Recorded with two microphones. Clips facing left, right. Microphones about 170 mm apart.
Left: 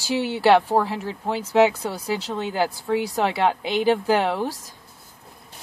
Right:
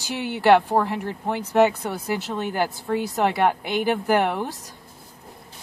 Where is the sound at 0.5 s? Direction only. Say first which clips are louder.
Right 2 dB; 10° left (ahead or behind).